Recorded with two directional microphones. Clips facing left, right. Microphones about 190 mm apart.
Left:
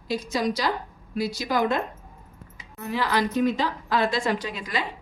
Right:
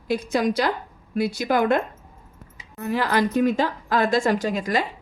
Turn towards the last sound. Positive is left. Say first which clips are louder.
# right 6 dB
turn(degrees=-45)  # may be behind; listen again after turning